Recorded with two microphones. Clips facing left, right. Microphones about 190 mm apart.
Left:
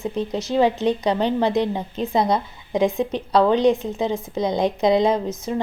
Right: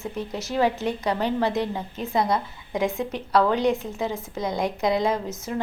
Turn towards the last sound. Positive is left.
turn(degrees=20)  # may be behind; listen again after turning